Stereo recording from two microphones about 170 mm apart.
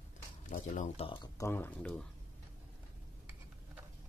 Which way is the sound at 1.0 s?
30° left (ahead or behind).